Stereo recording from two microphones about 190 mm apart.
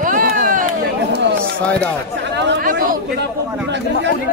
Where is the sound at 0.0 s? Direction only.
50° right (ahead or behind).